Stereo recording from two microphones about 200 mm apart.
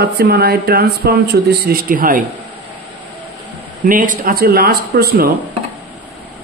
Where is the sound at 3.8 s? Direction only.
40° right (ahead or behind).